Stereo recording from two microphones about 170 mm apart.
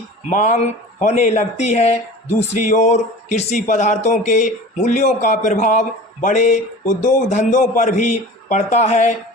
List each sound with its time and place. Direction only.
0.3 s speech: 45° left (ahead or behind)